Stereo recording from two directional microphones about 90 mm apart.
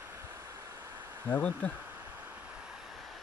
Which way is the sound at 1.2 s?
20° left (ahead or behind).